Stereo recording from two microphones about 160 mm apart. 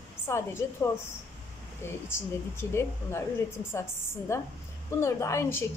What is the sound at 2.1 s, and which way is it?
Speech, 15° left (ahead or behind).